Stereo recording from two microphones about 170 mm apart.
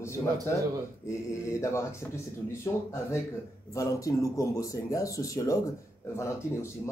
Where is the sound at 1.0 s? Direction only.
15° left (ahead or behind).